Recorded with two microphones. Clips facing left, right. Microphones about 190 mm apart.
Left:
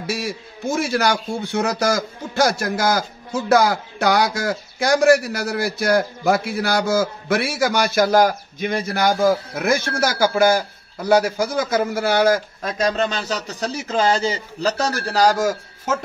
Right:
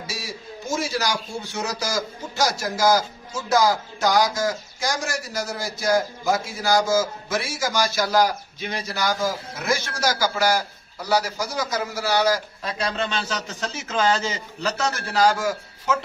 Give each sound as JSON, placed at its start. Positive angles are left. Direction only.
{"t": 0.0, "sound": "a man's voice", "side_deg": 60}